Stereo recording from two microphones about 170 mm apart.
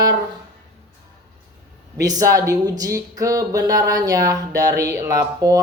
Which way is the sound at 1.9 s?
20° right (ahead or behind).